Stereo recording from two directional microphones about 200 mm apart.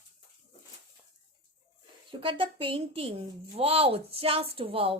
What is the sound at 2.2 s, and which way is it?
A woman's voice, 25° right (ahead or behind).